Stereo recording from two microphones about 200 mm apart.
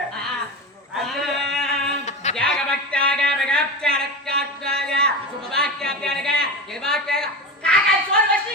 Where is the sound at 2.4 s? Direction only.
5° left (ahead or behind).